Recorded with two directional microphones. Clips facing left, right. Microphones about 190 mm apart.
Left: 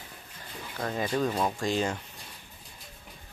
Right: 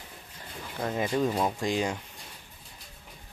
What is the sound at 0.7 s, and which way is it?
Speech, 15° right (ahead or behind).